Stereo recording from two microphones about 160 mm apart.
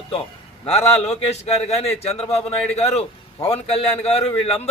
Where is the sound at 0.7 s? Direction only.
40° left (ahead or behind).